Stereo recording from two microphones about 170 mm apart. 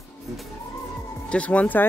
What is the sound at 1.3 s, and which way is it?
Speech, 10° left (ahead or behind).